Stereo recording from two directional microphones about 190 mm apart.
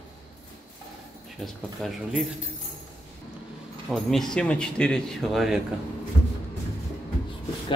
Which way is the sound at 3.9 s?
Centre (ahead or behind).